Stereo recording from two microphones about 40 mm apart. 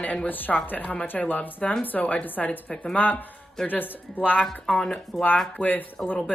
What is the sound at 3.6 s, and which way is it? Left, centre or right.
Speech, left.